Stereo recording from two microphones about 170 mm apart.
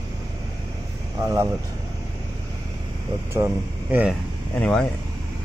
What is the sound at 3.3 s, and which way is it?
Speech, 15° right (ahead or behind).